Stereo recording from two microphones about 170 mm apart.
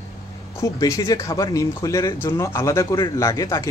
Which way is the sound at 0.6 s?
15° left (ahead or behind).